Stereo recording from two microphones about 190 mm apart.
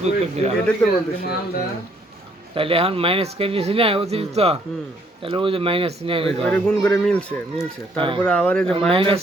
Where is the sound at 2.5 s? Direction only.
30° right (ahead or behind).